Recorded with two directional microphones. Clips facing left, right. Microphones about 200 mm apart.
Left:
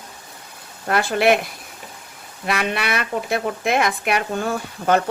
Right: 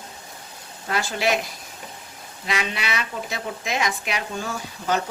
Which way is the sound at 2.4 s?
60° left (ahead or behind).